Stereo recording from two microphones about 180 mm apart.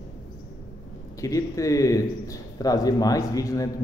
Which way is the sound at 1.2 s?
20° left (ahead or behind).